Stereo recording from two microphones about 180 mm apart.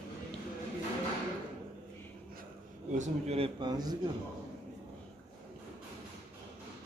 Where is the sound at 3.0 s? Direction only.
35° right (ahead or behind).